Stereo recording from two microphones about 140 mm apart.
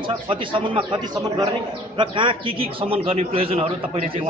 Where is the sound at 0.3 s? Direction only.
35° right (ahead or behind).